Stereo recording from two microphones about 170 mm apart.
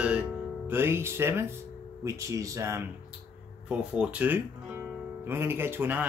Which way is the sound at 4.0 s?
10° right (ahead or behind).